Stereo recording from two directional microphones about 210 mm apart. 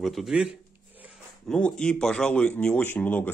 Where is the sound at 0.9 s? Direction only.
5° right (ahead or behind).